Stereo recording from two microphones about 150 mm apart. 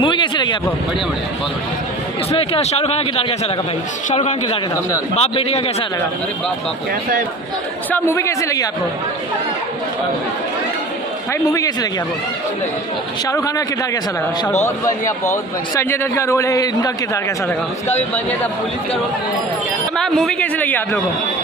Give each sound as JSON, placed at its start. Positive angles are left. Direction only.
{"t": 0.0, "sound": "speech", "side_deg": 30}
{"t": 2.3, "sound": "a man's voice", "side_deg": 40}
{"t": 7.9, "sound": "a man's voice", "side_deg": 15}
{"t": 11.5, "sound": "a man's voice", "side_deg": 25}
{"t": 13.3, "sound": "a man's voice", "side_deg": 20}
{"t": 15.7, "sound": "a man's voice", "side_deg": 15}
{"t": 20.0, "sound": "a man's voice", "side_deg": 0}